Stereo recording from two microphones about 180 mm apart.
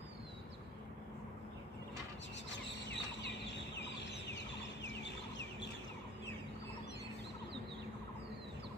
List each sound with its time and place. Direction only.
2.5 s chicken: 75° left (ahead or behind)
4.8 s bird: 75° left (ahead or behind)